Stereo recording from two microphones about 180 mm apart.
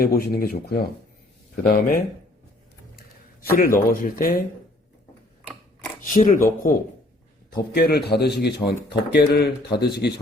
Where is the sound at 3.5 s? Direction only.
55° left (ahead or behind).